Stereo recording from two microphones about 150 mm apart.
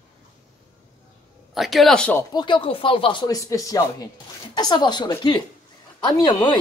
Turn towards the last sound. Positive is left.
turn(degrees=30)  # may be behind; listen again after turning